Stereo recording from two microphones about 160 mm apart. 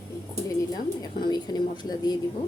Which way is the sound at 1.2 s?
25° left (ahead or behind).